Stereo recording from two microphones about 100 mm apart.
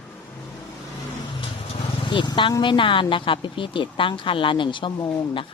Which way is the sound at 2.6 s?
55° left (ahead or behind).